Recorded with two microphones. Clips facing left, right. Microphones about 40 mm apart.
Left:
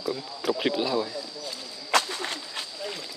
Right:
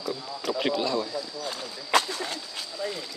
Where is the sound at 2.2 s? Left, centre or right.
Left.